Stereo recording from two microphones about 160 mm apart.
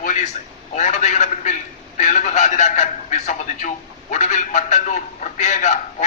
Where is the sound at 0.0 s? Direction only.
50° left (ahead or behind).